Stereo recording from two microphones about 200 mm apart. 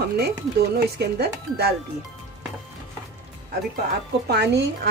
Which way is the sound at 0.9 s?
55° right (ahead or behind).